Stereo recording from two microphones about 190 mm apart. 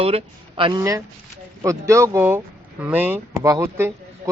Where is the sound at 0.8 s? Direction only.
15° right (ahead or behind).